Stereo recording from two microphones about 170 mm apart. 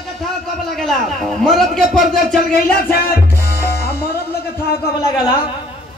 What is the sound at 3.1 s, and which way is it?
Music, 65° left (ahead or behind).